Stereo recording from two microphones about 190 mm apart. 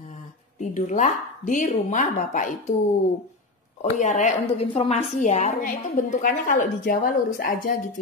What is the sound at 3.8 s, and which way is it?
A woman's voice, 40° left (ahead or behind).